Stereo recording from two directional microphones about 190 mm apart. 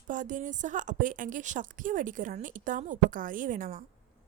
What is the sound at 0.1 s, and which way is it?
A woman's voice, 40° right (ahead or behind).